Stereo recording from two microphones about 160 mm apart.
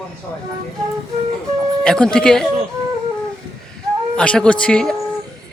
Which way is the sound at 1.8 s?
5° left (ahead or behind).